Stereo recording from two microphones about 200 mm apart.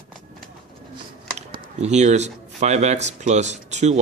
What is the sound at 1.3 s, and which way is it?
Speech, 35° right (ahead or behind).